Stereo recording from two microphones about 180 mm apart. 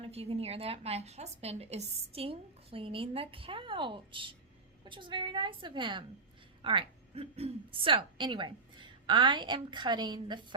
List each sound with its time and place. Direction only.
0.0 s a woman's voice: 30° right (ahead or behind)